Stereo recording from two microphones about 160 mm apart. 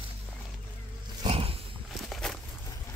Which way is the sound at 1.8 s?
Centre (ahead or behind).